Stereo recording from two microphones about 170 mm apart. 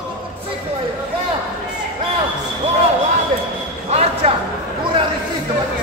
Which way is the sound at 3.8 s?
40° right (ahead or behind).